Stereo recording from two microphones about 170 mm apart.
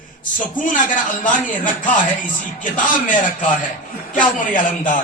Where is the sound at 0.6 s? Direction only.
50° left (ahead or behind).